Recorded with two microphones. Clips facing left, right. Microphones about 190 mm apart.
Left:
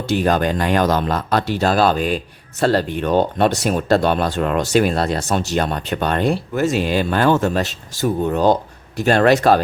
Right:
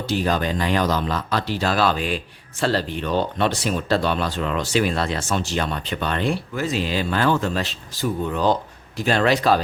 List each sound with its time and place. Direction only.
0.1 s speech: 55° left (ahead or behind)